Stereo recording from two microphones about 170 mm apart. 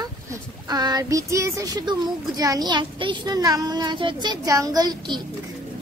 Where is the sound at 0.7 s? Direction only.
20° right (ahead or behind).